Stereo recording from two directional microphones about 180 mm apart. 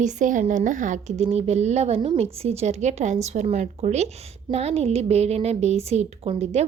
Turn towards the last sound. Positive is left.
turn(degrees=-35)  # may be behind; listen again after turning